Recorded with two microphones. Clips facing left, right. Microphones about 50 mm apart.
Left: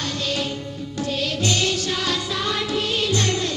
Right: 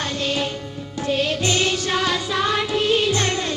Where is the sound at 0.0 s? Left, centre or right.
Right.